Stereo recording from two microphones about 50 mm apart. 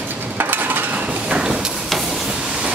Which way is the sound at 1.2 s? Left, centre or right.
Centre.